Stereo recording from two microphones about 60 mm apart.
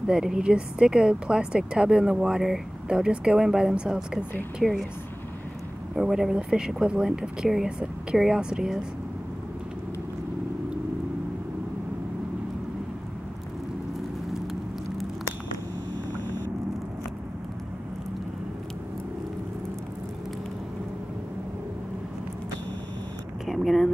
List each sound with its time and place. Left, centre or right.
0.0 s speech: centre
4.6 s speech: centre
5.9 s speech: centre
14.3 s vehicle: centre
23.4 s a sound: centre